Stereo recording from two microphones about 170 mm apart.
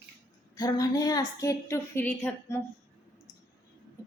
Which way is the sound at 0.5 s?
20° left (ahead or behind).